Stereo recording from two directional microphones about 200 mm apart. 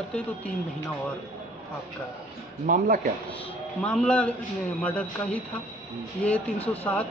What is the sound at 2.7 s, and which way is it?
Speech, 45° right (ahead or behind).